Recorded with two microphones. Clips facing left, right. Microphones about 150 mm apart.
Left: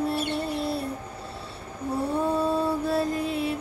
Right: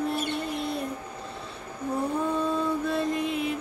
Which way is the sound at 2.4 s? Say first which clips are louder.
Left 2 dB; 35° left (ahead or behind).